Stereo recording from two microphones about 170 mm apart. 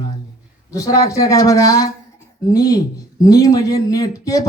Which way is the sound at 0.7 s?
20° left (ahead or behind).